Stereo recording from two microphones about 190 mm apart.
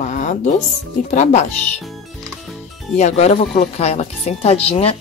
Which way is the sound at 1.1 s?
40° left (ahead or behind).